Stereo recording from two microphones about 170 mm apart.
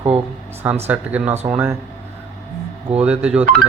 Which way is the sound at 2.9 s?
5° right (ahead or behind).